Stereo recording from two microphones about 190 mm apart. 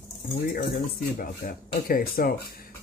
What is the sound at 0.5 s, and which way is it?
Speech, 50° left (ahead or behind).